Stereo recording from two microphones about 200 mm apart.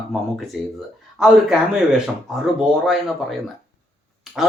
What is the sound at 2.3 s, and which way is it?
Speech, centre (ahead or behind).